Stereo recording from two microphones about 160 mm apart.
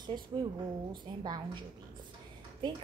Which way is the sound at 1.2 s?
25° right (ahead or behind).